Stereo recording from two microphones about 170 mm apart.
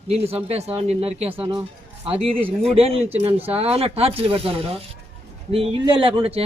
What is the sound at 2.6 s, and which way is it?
Speech, 35° right (ahead or behind).